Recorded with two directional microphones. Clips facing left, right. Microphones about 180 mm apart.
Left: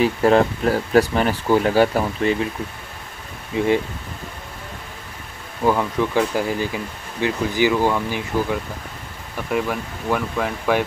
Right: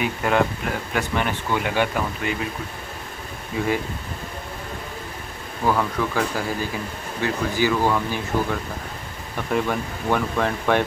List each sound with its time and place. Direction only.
0.0 s speech: 35° left (ahead or behind)
3.5 s speech: 20° left (ahead or behind)
5.7 s speech: 20° left (ahead or behind)